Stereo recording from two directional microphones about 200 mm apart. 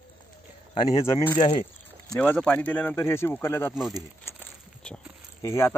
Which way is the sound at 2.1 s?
5° left (ahead or behind).